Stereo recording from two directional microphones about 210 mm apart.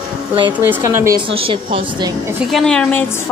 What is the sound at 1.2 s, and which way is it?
A woman's voice, 25° right (ahead or behind).